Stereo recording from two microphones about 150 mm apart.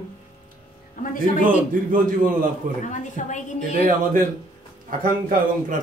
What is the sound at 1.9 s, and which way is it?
Speech, 60° right (ahead or behind).